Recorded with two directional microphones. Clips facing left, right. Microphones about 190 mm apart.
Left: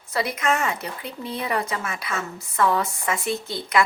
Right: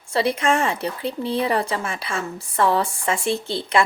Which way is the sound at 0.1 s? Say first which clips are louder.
Right 4 dB; 30° right (ahead or behind).